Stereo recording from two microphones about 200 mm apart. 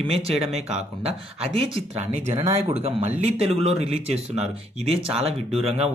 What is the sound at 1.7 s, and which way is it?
Speech, 30° right (ahead or behind).